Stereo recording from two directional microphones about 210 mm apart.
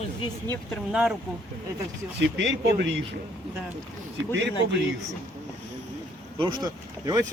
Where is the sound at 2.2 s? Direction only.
55° right (ahead or behind).